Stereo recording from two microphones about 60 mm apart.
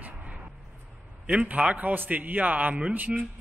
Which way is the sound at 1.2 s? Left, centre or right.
Right.